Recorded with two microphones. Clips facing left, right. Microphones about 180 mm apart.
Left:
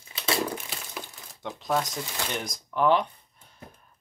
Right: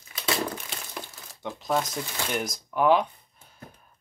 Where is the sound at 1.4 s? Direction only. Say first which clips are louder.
Right 1 dB; 5° right (ahead or behind).